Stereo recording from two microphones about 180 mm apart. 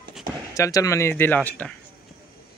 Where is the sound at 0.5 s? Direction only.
20° left (ahead or behind).